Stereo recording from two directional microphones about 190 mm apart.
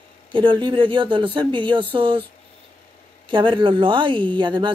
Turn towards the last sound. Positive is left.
turn(degrees=-25)  # may be behind; listen again after turning